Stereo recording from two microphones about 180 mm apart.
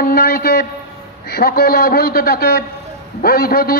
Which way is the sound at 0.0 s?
55° left (ahead or behind).